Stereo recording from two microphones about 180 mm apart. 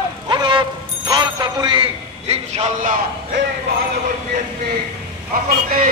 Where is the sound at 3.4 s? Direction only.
85° right.